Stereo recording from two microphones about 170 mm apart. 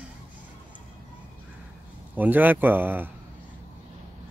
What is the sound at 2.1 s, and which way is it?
Speech, 10° right (ahead or behind).